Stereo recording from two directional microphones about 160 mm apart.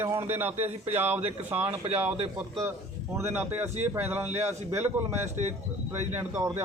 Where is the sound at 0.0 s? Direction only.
15° right (ahead or behind).